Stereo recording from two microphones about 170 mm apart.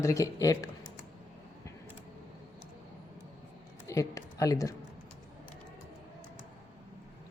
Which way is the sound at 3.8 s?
20° left (ahead or behind).